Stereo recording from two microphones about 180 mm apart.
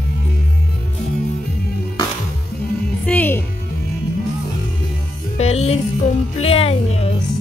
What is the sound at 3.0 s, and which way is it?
Music, 10° left (ahead or behind).